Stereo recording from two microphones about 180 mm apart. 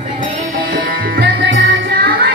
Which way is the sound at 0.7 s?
55° right (ahead or behind).